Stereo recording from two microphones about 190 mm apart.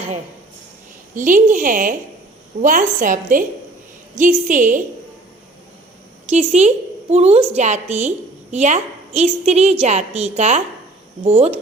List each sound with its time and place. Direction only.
1.1 s a woman's voice: 45° right (ahead or behind)
6.2 s a woman's voice: 35° right (ahead or behind)